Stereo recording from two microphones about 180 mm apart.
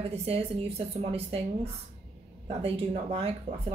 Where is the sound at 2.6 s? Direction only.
35° right (ahead or behind).